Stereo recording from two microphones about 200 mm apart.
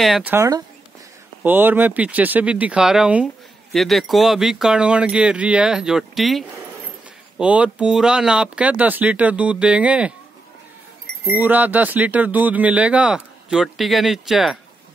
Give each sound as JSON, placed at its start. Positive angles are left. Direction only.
{"t": 0.0, "sound": "speech", "side_deg": -5}
{"t": 11.4, "sound": "speech", "side_deg": -10}